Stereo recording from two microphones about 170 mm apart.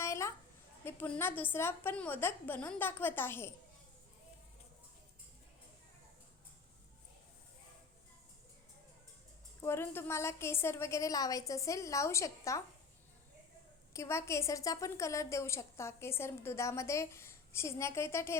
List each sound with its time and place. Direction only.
0.0 s a sound: 15° left (ahead or behind)
0.9 s a woman's voice: 10° left (ahead or behind)
9.6 s a woman's voice: 15° left (ahead or behind)
13.9 s a woman's voice: 15° left (ahead or behind)